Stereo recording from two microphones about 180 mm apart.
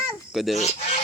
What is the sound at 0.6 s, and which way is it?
Speech, 40° left (ahead or behind).